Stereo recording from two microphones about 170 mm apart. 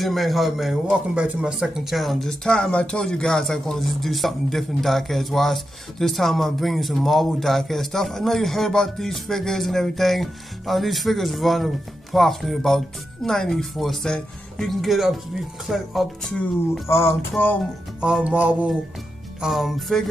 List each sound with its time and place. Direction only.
0.0 s a man's voice: centre (ahead or behind)
16.8 s music: 15° left (ahead or behind)
18.0 s music: 5° right (ahead or behind)
19.4 s a man's voice: centre (ahead or behind)